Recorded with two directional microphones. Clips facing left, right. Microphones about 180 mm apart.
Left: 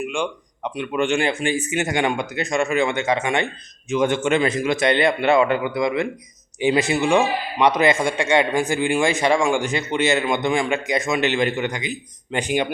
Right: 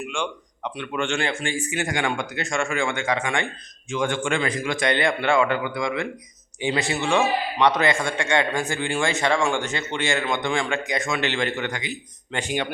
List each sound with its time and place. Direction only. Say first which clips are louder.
0.1 s a man's voice: left 4 dB; 15° left (ahead or behind)